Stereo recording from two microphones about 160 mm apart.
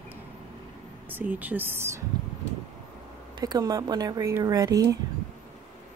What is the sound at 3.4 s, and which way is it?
Speech, 25° right (ahead or behind).